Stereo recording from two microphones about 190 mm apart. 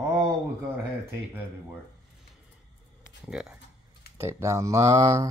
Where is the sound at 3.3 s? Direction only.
5° right (ahead or behind).